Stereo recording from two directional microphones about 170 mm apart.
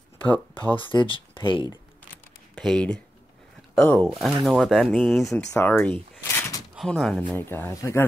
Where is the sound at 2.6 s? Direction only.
5° left (ahead or behind).